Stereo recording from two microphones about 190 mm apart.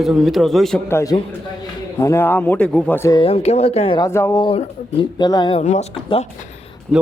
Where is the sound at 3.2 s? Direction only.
30° left (ahead or behind).